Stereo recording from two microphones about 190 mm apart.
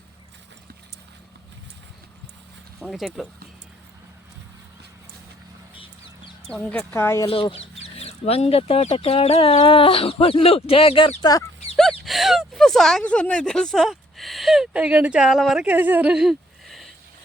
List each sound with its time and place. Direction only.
2.8 s speech: centre (ahead or behind)
6.5 s a woman's voice: 5° left (ahead or behind)
7.3 s speech: 30° left (ahead or behind)
11.8 s a sound: centre (ahead or behind)